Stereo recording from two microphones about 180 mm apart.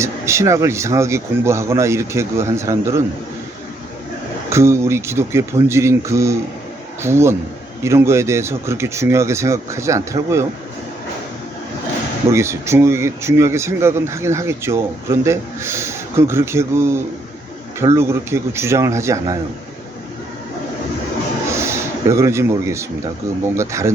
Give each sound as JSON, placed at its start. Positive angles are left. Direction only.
{"t": 0.0, "sound": "speech", "side_deg": -15}
{"t": 4.4, "sound": "speech", "side_deg": -15}
{"t": 12.3, "sound": "speech", "side_deg": -15}
{"t": 21.5, "sound": "a sound", "side_deg": -15}
{"t": 23.6, "sound": "speech", "side_deg": -15}